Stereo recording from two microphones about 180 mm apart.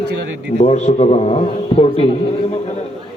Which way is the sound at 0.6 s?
35° left (ahead or behind).